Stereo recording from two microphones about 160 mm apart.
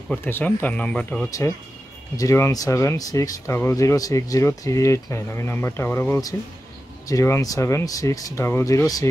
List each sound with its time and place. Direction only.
0.1 s speech: 10° left (ahead or behind)
2.1 s speech: 20° left (ahead or behind)